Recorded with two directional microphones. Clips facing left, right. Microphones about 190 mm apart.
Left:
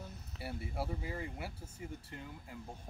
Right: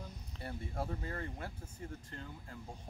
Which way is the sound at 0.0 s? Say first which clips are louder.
Left 1 dB; 5° left (ahead or behind).